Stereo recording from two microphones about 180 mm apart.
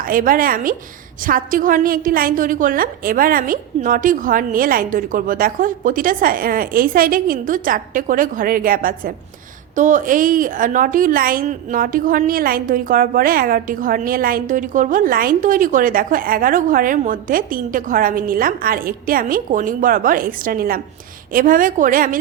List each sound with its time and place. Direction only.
0.0 s a woman's voice: 50° right (ahead or behind)